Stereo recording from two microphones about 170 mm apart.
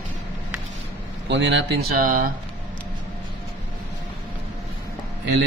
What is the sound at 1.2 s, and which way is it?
Speech, 90° right.